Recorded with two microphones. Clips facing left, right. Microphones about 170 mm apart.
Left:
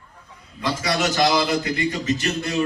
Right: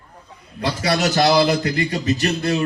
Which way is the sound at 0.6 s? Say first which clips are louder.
Right 3 dB; 35° right (ahead or behind).